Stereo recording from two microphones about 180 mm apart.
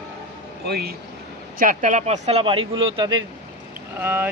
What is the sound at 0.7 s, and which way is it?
Speech, 60° right (ahead or behind).